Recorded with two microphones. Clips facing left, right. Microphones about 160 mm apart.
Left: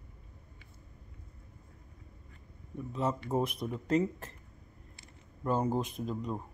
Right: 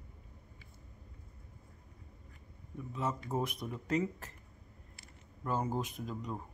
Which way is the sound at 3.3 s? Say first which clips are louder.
Left 4 dB; 25° left (ahead or behind).